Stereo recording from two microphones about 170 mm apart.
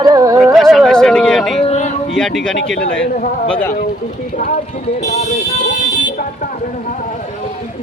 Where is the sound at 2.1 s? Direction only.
Centre (ahead or behind).